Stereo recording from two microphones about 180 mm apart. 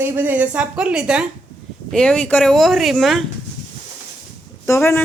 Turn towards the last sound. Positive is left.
turn(degrees=10)  # may be behind; listen again after turning